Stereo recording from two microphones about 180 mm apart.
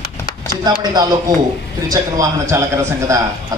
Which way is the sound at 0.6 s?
25° right (ahead or behind).